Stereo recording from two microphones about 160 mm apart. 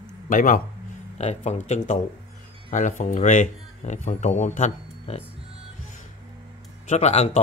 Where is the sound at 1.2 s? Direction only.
45° left (ahead or behind).